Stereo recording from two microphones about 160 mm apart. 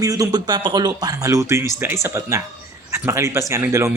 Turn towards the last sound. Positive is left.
turn(degrees=-15)  # may be behind; listen again after turning